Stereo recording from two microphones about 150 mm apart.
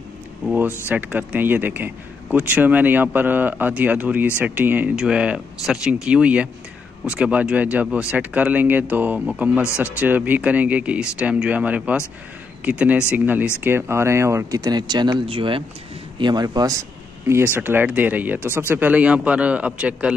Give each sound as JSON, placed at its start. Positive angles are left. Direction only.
{"t": 0.5, "sound": "speech", "side_deg": -10}